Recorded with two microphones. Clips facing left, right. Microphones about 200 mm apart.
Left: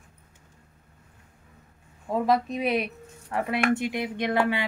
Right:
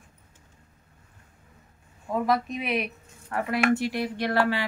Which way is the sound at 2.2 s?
30° left (ahead or behind).